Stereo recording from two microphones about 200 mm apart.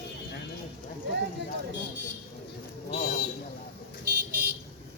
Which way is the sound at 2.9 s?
45° left (ahead or behind).